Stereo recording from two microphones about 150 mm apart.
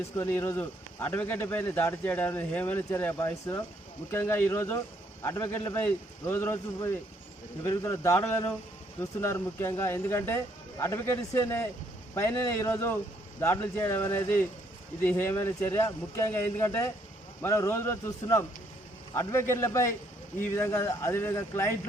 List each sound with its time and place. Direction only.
0.2 s a man's voice: 15° left (ahead or behind)